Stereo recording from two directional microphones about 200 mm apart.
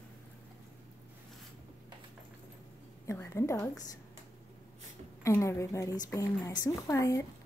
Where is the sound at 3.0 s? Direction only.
15° left (ahead or behind).